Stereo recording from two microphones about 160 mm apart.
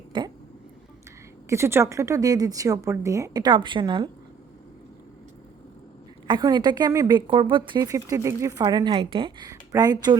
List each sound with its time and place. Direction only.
0.1 s hiccup: 30° right (ahead or behind)
1.5 s a woman's voice: 15° right (ahead or behind)
6.2 s a woman's voice: 25° right (ahead or behind)